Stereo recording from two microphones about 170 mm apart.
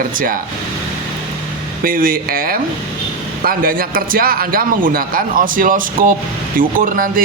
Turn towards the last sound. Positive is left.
turn(degrees=-55)  # may be behind; listen again after turning